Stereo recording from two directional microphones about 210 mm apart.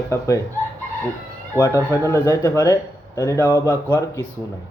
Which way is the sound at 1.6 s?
15° left (ahead or behind).